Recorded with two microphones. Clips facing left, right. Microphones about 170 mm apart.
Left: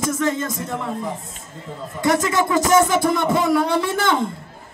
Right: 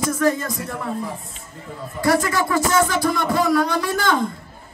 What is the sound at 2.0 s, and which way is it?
Speech, 20° left (ahead or behind).